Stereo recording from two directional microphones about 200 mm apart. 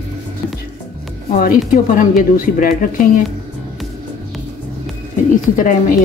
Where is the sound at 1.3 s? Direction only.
45° left (ahead or behind).